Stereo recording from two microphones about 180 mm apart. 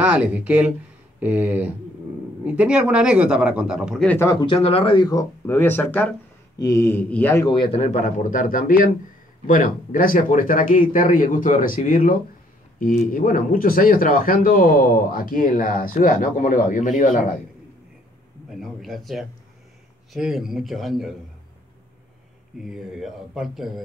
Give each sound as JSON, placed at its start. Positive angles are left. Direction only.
{"t": 0.0, "sound": "speech", "side_deg": -5}
{"t": 4.1, "sound": "a man's voice", "side_deg": 15}
{"t": 7.4, "sound": "a man's voice", "side_deg": 25}
{"t": 18.5, "sound": "speech", "side_deg": 0}
{"t": 22.6, "sound": "speech", "side_deg": 0}